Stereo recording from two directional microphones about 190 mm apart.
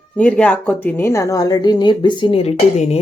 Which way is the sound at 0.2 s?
5° left (ahead or behind).